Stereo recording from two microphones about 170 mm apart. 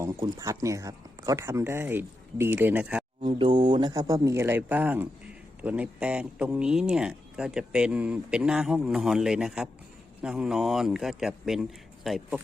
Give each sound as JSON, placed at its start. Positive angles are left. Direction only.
{"t": 0.3, "sound": "speech", "side_deg": -20}
{"t": 3.2, "sound": "speech", "side_deg": -30}